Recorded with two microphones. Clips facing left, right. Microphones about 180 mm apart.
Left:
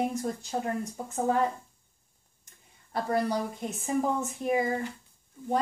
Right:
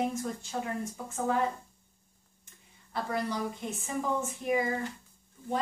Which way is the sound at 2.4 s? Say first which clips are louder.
Even; 40° left (ahead or behind).